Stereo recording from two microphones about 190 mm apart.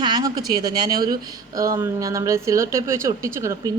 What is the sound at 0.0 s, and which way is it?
A woman's voice, 20° right (ahead or behind).